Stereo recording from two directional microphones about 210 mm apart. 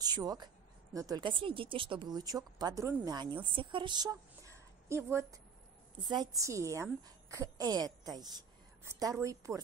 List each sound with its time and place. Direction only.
0.0 s a man's voice: 20° right (ahead or behind)